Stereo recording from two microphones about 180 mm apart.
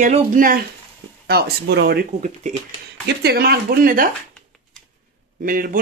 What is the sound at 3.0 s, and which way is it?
Speech, 65° right (ahead or behind).